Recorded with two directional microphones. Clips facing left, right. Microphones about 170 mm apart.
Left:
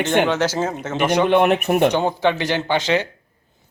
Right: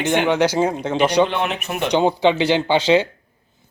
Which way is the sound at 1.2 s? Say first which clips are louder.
Left 6 dB; 55° left (ahead or behind).